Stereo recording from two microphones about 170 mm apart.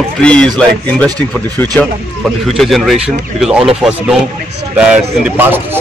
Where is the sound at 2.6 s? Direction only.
Centre (ahead or behind).